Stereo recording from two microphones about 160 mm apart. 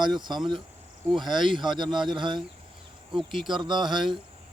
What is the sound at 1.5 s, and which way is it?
Speech, 30° right (ahead or behind).